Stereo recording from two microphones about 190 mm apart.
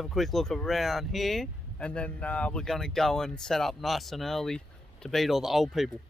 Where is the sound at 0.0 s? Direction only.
Centre (ahead or behind).